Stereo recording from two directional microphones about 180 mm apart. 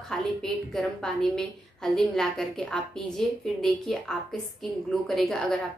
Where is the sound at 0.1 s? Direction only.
5° left (ahead or behind).